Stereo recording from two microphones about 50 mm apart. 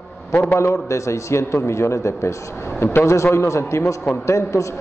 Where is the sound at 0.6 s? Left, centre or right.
Left.